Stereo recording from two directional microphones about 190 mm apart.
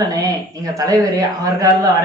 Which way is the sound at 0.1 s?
20° right (ahead or behind).